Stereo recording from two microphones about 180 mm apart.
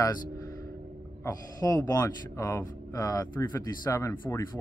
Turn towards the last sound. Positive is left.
turn(degrees=20)  # may be behind; listen again after turning